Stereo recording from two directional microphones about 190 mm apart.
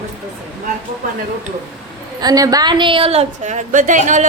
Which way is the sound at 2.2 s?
20° right (ahead or behind).